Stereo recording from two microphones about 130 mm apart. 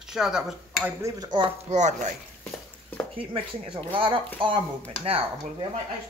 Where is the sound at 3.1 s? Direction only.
45° right (ahead or behind).